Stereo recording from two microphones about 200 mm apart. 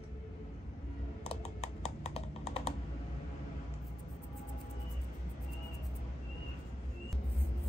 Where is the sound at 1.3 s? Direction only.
30° left (ahead or behind).